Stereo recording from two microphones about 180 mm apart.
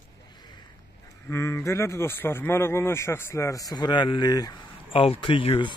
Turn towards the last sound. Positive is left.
turn(degrees=30)  # may be behind; listen again after turning